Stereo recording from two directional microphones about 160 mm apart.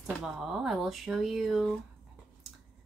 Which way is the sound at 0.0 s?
Centre (ahead or behind).